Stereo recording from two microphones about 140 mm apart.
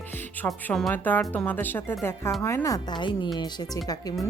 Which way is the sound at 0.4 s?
5° left (ahead or behind).